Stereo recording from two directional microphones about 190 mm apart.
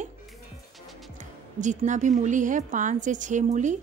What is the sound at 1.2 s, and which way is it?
A woman's voice, 40° right (ahead or behind).